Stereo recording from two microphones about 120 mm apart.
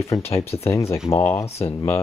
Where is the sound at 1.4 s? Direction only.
60° left (ahead or behind).